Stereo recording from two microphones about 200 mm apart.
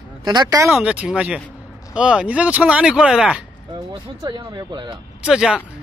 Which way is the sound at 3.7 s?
20° right (ahead or behind).